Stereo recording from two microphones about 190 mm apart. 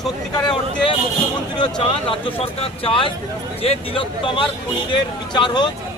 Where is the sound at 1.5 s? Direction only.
25° left (ahead or behind).